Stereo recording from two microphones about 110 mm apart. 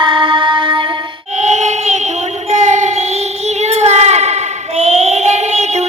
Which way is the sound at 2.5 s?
90° right.